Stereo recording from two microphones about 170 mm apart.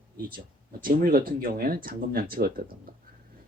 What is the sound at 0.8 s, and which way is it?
Speech, 55° right (ahead or behind).